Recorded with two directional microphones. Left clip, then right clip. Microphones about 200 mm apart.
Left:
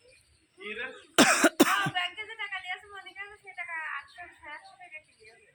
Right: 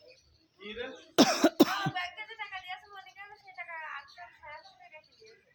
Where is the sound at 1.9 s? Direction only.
65° right (ahead or behind).